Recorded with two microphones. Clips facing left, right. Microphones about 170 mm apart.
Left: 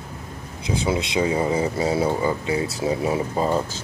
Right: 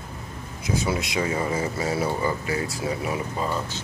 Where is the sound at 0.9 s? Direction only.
25° left (ahead or behind).